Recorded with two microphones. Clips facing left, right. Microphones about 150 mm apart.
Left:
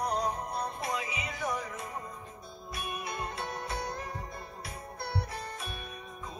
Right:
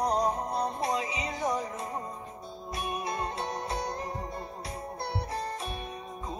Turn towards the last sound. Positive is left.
turn(degrees=-30)  # may be behind; listen again after turning